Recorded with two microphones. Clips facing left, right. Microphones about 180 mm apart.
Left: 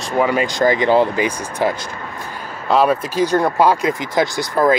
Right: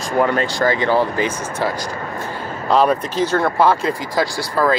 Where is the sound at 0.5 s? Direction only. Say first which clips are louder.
Left 4 dB; 15° left (ahead or behind).